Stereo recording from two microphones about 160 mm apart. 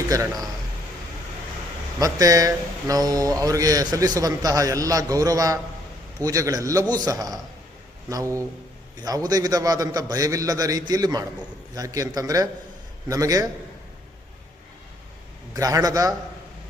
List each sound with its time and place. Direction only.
0.1 s speech: 20° right (ahead or behind)
2.0 s speech: 20° right (ahead or behind)
15.5 s speech: 20° right (ahead or behind)